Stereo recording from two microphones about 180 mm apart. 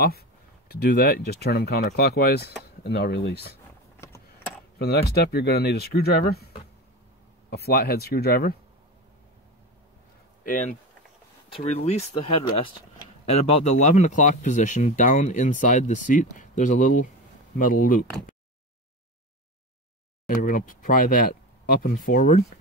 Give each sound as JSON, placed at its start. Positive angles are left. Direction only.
{"t": 0.7, "sound": "speech", "side_deg": 60}
{"t": 4.7, "sound": "speech", "side_deg": 60}
{"t": 10.4, "sound": "speech", "side_deg": 45}
{"t": 11.5, "sound": "speech", "side_deg": 35}
{"t": 13.2, "sound": "speech", "side_deg": 35}
{"t": 20.2, "sound": "speech", "side_deg": 50}